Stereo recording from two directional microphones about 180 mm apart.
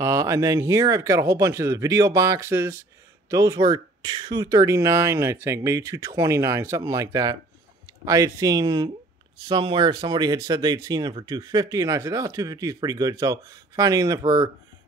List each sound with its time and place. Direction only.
0.0 s speech: 15° right (ahead or behind)